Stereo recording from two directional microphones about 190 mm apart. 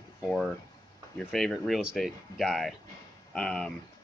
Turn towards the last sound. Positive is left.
turn(degrees=5)  # may be behind; listen again after turning